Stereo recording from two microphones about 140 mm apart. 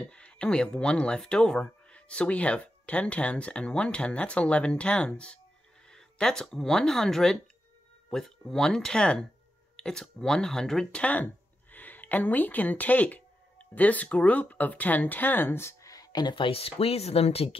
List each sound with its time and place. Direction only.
0.0 s a woman's voice: 5° left (ahead or behind); by 17.6 s 45° left (ahead or behind)